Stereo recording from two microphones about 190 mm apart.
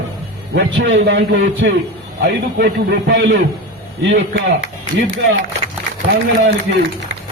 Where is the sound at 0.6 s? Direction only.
70° right (ahead or behind).